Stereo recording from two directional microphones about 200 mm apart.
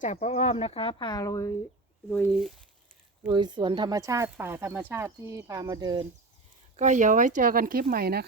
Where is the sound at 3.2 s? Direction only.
20° right (ahead or behind).